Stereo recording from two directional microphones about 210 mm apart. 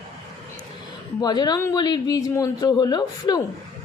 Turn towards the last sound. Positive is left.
turn(degrees=20)  # may be behind; listen again after turning